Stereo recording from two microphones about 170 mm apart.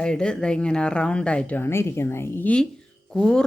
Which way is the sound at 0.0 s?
5° left (ahead or behind).